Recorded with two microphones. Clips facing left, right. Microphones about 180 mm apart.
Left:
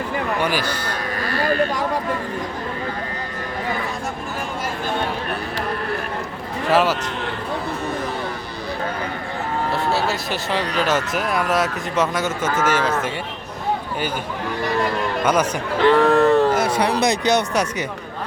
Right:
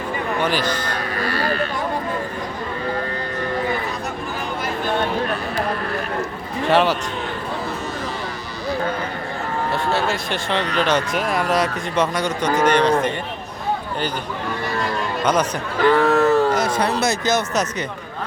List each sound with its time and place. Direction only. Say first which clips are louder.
0.3 s speech: right 3 dB; 10° left (ahead or behind)
1.3 s speech: left 4 dB; 45° left (ahead or behind)
6.7 s speech: right 1 dB; centre (ahead or behind)
9.7 s speech: right 1 dB; centre (ahead or behind)
15.2 s speech: even; 10° left (ahead or behind)
15.9 s speech: left 1 dB; centre (ahead or behind)